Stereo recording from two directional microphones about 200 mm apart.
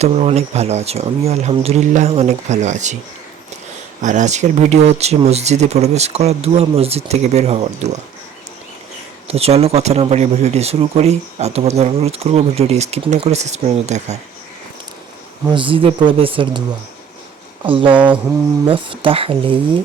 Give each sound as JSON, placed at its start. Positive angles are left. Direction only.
{"t": 0.0, "sound": "speech", "side_deg": -35}
{"t": 4.0, "sound": "speech", "side_deg": -40}
{"t": 9.2, "sound": "speech", "side_deg": -30}
{"t": 15.4, "sound": "speech", "side_deg": -25}
{"t": 17.7, "sound": "speech", "side_deg": -25}
{"t": 17.9, "sound": "mantra", "side_deg": -5}
{"t": 18.6, "sound": "speech", "side_deg": -25}